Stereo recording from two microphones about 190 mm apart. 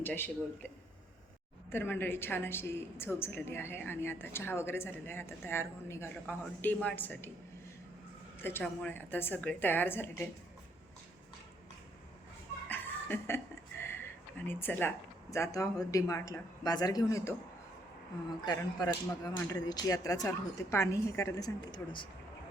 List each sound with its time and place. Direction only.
0.0 s a woman's voice: 10° left (ahead or behind)
1.7 s a woman's voice: 10° left (ahead or behind)
8.4 s a woman's voice: 10° left (ahead or behind)
12.6 s speech: 10° left (ahead or behind)
18.4 s a woman's voice: 20° left (ahead or behind)